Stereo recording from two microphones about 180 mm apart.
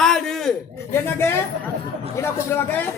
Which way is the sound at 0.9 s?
15° left (ahead or behind).